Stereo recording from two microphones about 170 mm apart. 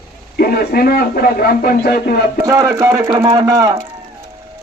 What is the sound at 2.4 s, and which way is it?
A man's voice, 20° right (ahead or behind).